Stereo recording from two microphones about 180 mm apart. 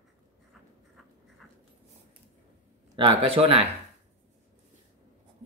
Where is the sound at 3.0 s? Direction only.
30° right (ahead or behind).